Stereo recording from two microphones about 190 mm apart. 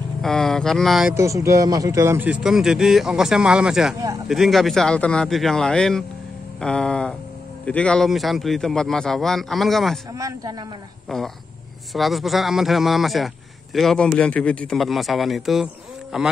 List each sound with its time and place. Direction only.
0.2 s speech: centre (ahead or behind)
1.1 s speech: 15° right (ahead or behind); by 9.9 s centre (ahead or behind)
10.1 s a man's voice: 15° right (ahead or behind)
11.1 s speech: centre (ahead or behind)